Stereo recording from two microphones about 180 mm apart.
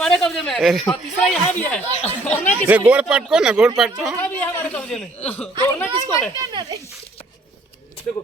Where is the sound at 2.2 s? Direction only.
10° left (ahead or behind).